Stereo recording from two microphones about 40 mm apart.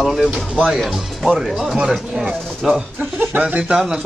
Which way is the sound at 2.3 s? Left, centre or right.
Centre.